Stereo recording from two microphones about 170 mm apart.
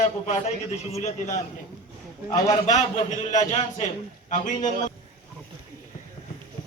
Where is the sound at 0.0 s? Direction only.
40° left (ahead or behind).